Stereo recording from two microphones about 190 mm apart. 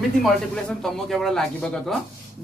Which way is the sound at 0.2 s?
Centre (ahead or behind).